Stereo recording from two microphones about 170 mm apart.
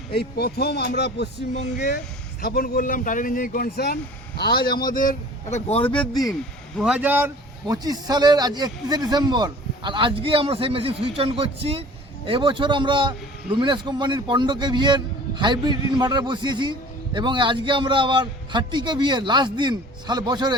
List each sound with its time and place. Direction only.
0.2 s speech: 70° left (ahead or behind)
2.4 s a man's voice: 60° left (ahead or behind)
4.7 s speech: 25° left (ahead or behind)
4.9 s speech: 50° left (ahead or behind)
5.9 s speech: 5° left (ahead or behind)
6.7 s speech: 5° right (ahead or behind)
7.7 s a man's voice: 20° right (ahead or behind)